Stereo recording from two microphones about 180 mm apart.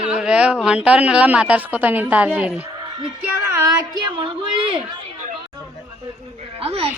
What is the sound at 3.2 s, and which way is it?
Music, 15° right (ahead or behind).